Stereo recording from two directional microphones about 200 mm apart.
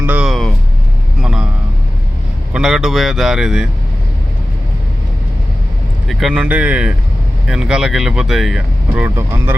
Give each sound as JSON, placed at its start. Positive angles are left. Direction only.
{"t": 0.0, "sound": "vehicle", "side_deg": -5}
{"t": 1.2, "sound": "a sound", "side_deg": -5}
{"t": 2.5, "sound": "speech", "side_deg": 0}
{"t": 6.1, "sound": "speech", "side_deg": 0}
{"t": 9.1, "sound": "speech", "side_deg": -15}